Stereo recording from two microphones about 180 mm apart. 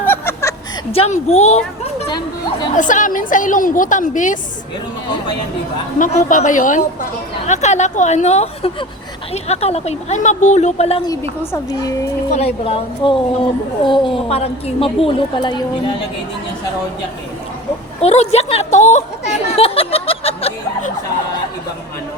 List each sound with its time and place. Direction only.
0.0 s a sound: 10° left (ahead or behind)
0.9 s a woman's voice: 35° left (ahead or behind)
2.7 s a woman's voice: 45° left (ahead or behind)
6.0 s a woman's voice: 45° left (ahead or behind)
11.0 s a woman's voice: 15° left (ahead or behind)
12.3 s a woman's voice: 35° left (ahead or behind)
18.0 s a woman's voice: 35° left (ahead or behind)